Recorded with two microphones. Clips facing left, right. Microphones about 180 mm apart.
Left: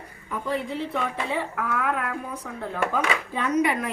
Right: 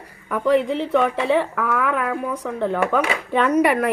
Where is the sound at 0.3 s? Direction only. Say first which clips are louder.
Right 10 dB; 75° right (ahead or behind).